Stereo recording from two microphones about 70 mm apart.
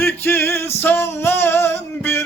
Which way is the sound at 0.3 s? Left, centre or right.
Left.